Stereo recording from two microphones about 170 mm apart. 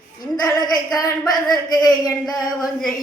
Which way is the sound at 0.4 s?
25° left (ahead or behind).